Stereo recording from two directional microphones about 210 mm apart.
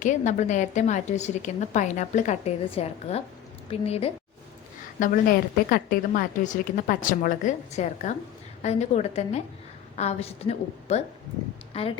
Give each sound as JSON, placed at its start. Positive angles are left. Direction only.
{"t": 0.0, "sound": "a woman's voice", "side_deg": 35}